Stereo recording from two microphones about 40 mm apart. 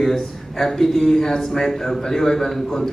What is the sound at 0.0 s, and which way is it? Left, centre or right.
Speech, centre.